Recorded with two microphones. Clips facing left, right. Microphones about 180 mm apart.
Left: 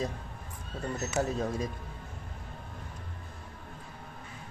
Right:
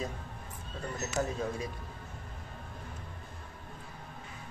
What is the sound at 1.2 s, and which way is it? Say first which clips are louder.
Speech: left 2 dB; 30° left (ahead or behind).